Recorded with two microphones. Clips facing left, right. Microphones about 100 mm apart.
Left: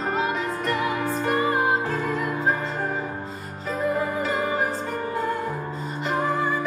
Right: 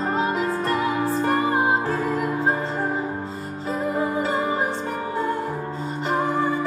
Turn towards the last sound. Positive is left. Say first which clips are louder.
# right 2 dB
turn(degrees=-35)  # may be behind; listen again after turning